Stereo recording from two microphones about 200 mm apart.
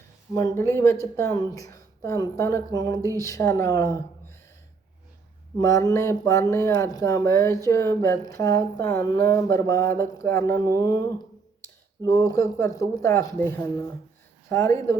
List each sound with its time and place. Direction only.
0.3 s speech: 15° left (ahead or behind)
5.5 s speech: 15° left (ahead or behind)